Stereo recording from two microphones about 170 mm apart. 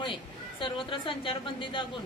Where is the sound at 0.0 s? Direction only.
30° left (ahead or behind).